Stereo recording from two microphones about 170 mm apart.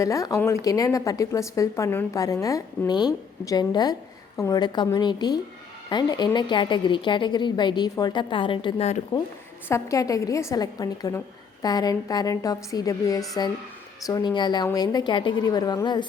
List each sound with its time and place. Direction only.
0.0 s a woman's voice: 20° left (ahead or behind)
9.6 s a woman's voice: 15° left (ahead or behind)